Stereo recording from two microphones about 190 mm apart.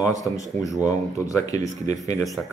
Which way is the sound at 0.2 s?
15° left (ahead or behind).